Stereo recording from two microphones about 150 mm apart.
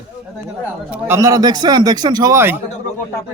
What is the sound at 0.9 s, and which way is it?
Speech, 15° right (ahead or behind).